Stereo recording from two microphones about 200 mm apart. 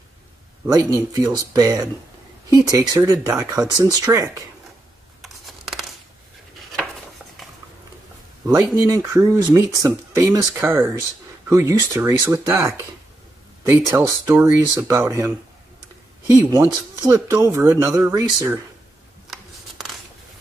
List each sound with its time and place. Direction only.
0.7 s speech: 20° right (ahead or behind)
5.2 s a sound: centre (ahead or behind)
8.7 s speech: 15° right (ahead or behind)
17.0 s speech: 15° right (ahead or behind)
19.3 s scissors: centre (ahead or behind)